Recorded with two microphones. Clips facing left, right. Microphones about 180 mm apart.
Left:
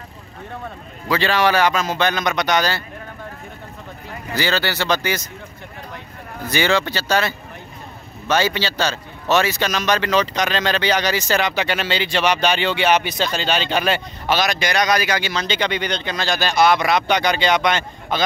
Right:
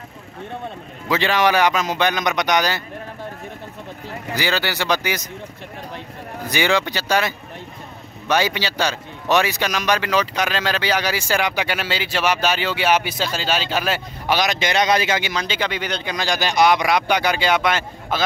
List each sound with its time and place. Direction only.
1.0 s a man's voice: 20° right (ahead or behind)
4.4 s a man's voice: 15° right (ahead or behind)
6.5 s a man's voice: 15° right (ahead or behind)